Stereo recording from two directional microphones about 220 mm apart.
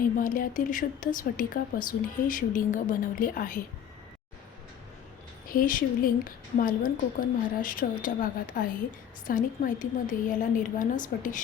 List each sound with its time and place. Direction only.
0.2 s a woman's voice: 40° left (ahead or behind)
5.5 s a woman's voice: 40° left (ahead or behind)